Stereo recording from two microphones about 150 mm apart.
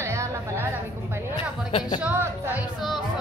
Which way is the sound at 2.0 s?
10° right (ahead or behind).